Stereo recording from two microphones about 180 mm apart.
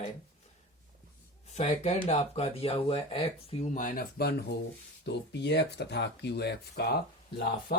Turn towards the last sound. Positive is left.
turn(degrees=60)  # may be behind; listen again after turning